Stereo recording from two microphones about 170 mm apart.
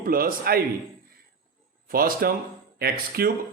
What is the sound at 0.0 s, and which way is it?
Speech, 60° right (ahead or behind).